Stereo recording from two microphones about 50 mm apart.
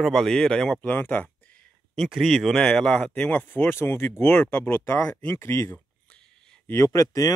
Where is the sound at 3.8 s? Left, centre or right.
Left.